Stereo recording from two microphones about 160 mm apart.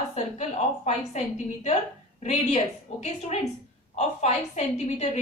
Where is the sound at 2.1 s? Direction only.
45° left (ahead or behind).